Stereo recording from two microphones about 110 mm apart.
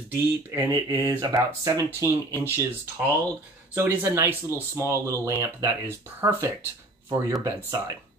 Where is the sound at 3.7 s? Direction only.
20° right (ahead or behind).